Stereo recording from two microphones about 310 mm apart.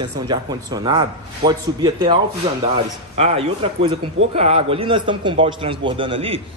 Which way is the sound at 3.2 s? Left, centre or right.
Centre.